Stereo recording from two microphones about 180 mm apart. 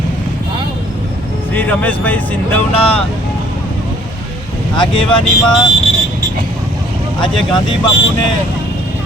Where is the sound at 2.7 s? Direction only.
30° left (ahead or behind).